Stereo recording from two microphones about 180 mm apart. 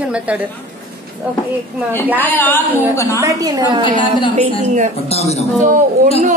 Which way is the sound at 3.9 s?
25° left (ahead or behind).